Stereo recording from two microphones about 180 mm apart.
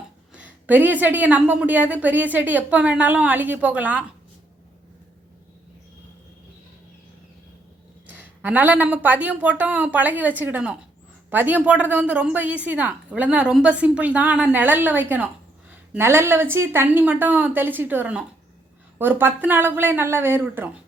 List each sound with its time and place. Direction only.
0.3 s a woman's voice: 10° right (ahead or behind)
8.1 s a woman's voice: 10° right (ahead or behind)